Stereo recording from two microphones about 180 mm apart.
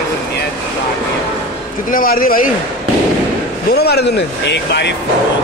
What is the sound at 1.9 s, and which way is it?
Speech, 55° left (ahead or behind).